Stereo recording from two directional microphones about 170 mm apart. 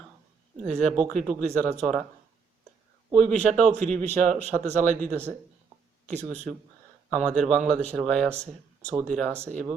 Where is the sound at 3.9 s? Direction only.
40° right (ahead or behind).